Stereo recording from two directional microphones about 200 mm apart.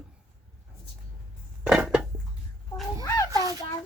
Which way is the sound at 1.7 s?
5° right (ahead or behind).